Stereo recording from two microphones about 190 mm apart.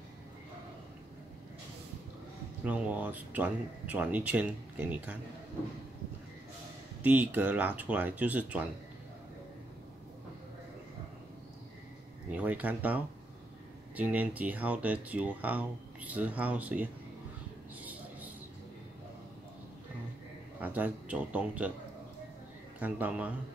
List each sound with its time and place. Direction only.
2.6 s speech: 10° right (ahead or behind)
7.0 s speech: 10° right (ahead or behind)
12.4 s speech: 10° right (ahead or behind)
20.6 s speech: 10° right (ahead or behind)
22.8 s speech: 10° right (ahead or behind)